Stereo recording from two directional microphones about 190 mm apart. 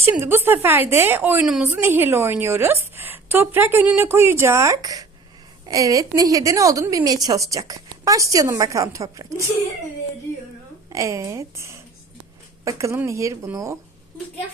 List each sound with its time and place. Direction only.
0.0 s a woman's voice: 10° right (ahead or behind)
10.8 s a woman's voice: 15° right (ahead or behind)